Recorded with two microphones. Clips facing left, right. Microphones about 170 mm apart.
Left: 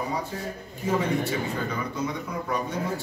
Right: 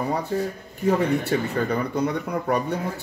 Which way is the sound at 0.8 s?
65° right (ahead or behind).